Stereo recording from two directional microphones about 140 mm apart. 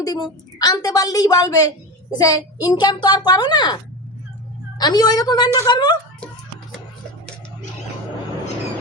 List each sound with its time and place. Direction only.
0.0 s a woman's voice: 25° left (ahead or behind)
4.8 s a woman's voice: 30° left (ahead or behind)